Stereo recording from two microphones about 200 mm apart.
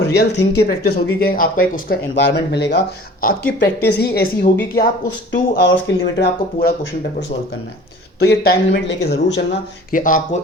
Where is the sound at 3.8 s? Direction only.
55° left (ahead or behind).